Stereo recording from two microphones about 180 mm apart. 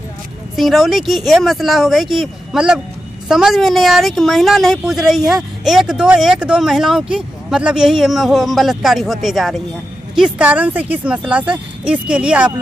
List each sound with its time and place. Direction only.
0.6 s a woman's voice: centre (ahead or behind)